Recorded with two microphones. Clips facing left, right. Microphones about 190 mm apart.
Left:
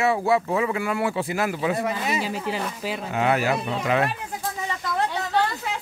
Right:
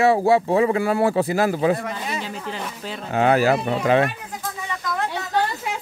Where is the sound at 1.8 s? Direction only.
10° left (ahead or behind).